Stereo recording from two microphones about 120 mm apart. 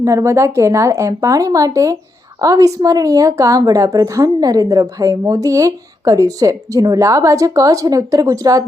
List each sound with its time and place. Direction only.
0.0 s a woman's voice: 25° right (ahead or behind)